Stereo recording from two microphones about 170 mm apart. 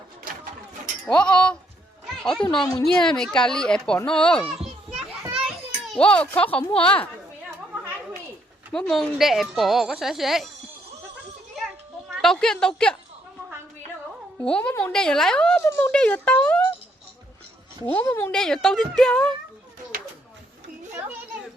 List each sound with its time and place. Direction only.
1.0 s speech: 5° left (ahead or behind)
2.6 s a woman's voice: 20° left (ahead or behind)
2.8 s speech: 5° left (ahead or behind)
5.9 s speech: 5° left (ahead or behind)
8.7 s speech: 5° left (ahead or behind)
12.0 s a woman's voice: centre (ahead or behind)
14.3 s speech: 5° left (ahead or behind)
17.8 s speech: 15° left (ahead or behind)
18.3 s speech: 5° left (ahead or behind)